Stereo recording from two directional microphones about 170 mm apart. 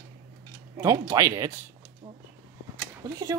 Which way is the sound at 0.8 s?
20° right (ahead or behind).